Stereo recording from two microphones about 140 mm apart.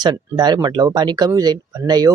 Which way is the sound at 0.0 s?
30° right (ahead or behind).